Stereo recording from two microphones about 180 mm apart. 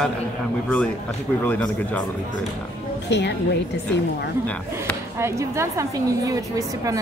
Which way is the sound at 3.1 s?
70° left (ahead or behind).